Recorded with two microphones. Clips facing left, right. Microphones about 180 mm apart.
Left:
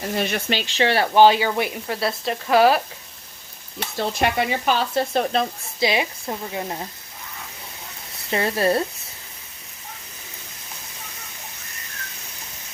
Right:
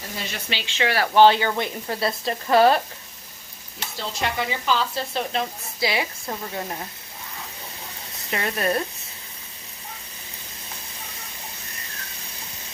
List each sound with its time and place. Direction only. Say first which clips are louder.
0.1 s speech: left 8 dB; 60° left (ahead or behind)
0.8 s speech: left 3 dB; 25° left (ahead or behind)
1.1 s speech: even; 15° left (ahead or behind)
3.8 s speech: left 6 dB; 55° left (ahead or behind)
5.8 s speech: left 3 dB; 20° left (ahead or behind)
8.3 s speech: left 4 dB; 30° left (ahead or behind)